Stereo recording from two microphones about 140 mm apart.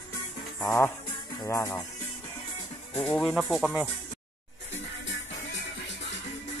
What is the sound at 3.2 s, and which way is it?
Speech, centre (ahead or behind).